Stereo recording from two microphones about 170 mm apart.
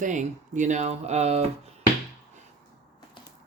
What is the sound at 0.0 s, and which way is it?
Speech, 45° right (ahead or behind).